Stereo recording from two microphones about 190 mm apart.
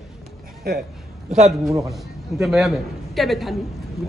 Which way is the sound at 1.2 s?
35° right (ahead or behind).